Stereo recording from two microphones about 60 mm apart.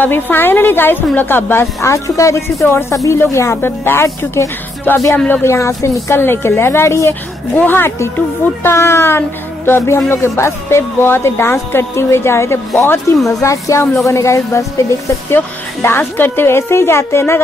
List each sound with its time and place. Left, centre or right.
0.0 s a woman's voice: left
1.8 s speech: left
3.6 s a woman's voice: left
5.3 s speech: left
6.1 s speech: left
7.5 s a woman's voice: left
8.6 s speech: left
13.1 s speech: left
15.3 s speech: left